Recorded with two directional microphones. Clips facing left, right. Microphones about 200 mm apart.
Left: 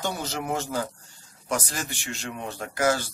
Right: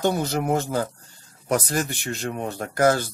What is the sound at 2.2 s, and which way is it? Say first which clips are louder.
Speech: right 5 dB; 40° right (ahead or behind).